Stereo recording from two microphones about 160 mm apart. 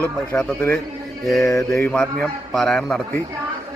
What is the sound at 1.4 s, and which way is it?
Mantra, 20° left (ahead or behind).